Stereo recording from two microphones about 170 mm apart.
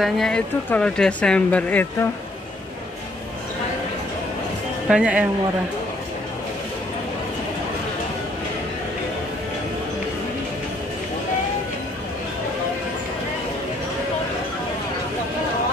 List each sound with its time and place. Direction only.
0.0 s speech: 5° left (ahead or behind)
4.8 s speech: 5° right (ahead or behind)